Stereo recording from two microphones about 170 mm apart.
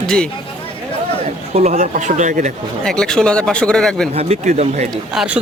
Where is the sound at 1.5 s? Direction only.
40° right (ahead or behind).